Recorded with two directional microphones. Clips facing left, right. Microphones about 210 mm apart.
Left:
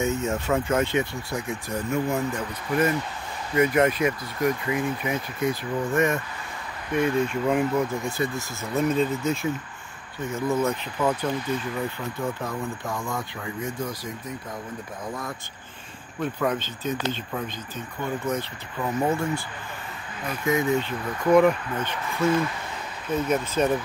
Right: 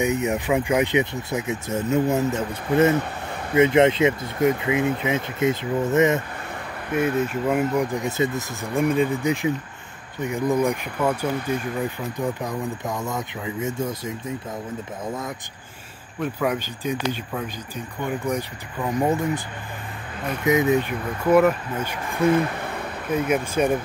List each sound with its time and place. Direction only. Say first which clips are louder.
0.0 s speech: right 3 dB; 15° right (ahead or behind)
6.9 s speech: right 1 dB; 5° right (ahead or behind)
7.9 s speech: right 4 dB; 20° right (ahead or behind)
16.2 s speech: right 2 dB; 10° right (ahead or behind)
20.4 s speech: right 4 dB; 20° right (ahead or behind)
22.3 s a sound: right 3 dB; 60° right (ahead or behind)
23.1 s speech: right 2 dB; 10° right (ahead or behind)